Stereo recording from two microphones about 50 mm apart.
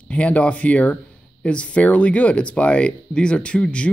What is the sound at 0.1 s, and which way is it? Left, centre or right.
Speech, left.